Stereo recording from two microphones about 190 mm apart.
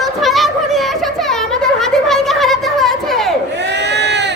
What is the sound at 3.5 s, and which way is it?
Sheep, 65° right (ahead or behind).